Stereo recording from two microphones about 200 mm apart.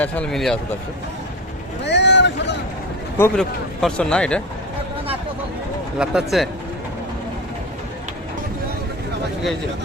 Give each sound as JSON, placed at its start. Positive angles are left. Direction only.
{"t": 0.0, "sound": "speech", "side_deg": 5}
{"t": 1.8, "sound": "a sound", "side_deg": 60}
{"t": 3.2, "sound": "speech", "side_deg": 5}
{"t": 6.0, "sound": "speech", "side_deg": 0}